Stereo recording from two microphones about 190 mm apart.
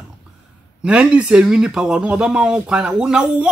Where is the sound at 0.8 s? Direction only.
5° right (ahead or behind).